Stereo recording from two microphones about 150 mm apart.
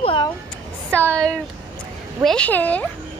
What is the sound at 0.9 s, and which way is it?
Speech, 10° left (ahead or behind).